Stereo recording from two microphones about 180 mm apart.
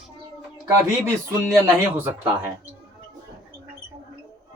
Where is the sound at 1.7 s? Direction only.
15° right (ahead or behind).